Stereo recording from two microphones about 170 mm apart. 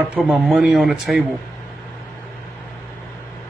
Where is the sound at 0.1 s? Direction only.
Centre (ahead or behind).